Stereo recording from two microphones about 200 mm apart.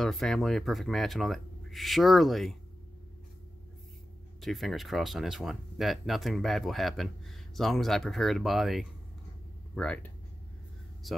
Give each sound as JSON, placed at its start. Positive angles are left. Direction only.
{"t": 0.0, "sound": "speech", "side_deg": 0}
{"t": 4.4, "sound": "speech", "side_deg": 0}